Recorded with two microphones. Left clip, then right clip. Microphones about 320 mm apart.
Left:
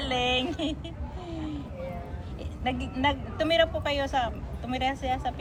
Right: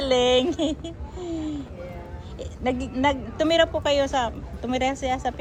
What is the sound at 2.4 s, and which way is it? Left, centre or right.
A woman's voice, centre.